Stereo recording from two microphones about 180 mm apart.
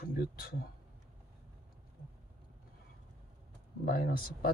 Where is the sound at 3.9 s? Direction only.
55° left (ahead or behind).